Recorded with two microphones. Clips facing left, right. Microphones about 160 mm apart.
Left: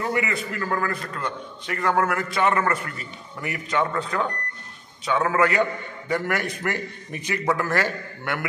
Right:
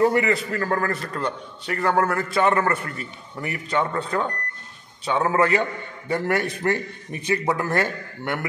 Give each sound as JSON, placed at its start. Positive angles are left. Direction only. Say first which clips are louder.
{"t": 0.1, "sound": "a man's voice", "louder": "right 4 dB", "side_deg": -40}